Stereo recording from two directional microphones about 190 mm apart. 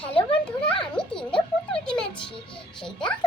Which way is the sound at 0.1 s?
30° left (ahead or behind).